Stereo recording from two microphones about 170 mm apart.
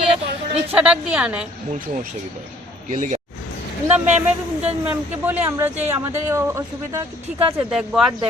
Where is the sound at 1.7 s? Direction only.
50° right (ahead or behind).